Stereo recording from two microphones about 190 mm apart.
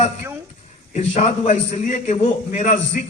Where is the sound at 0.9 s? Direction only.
35° left (ahead or behind).